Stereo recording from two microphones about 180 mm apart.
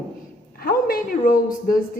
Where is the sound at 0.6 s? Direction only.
55° left (ahead or behind).